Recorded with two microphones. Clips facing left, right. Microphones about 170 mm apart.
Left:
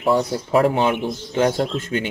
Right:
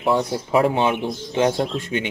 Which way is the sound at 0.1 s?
20° right (ahead or behind).